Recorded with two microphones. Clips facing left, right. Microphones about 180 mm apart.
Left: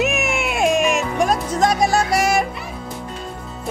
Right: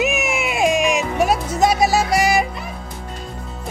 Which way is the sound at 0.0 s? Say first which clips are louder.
Even; centre (ahead or behind).